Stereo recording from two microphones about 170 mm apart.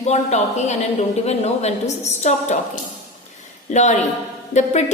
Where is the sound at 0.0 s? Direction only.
40° left (ahead or behind).